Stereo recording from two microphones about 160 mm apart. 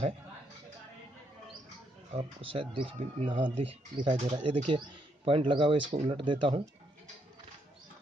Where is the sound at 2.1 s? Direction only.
35° right (ahead or behind).